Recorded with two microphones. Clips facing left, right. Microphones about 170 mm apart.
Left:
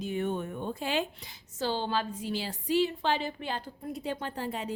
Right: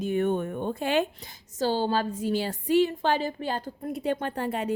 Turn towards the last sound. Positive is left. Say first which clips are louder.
# right 6 dB
turn(degrees=-60)  # may be behind; listen again after turning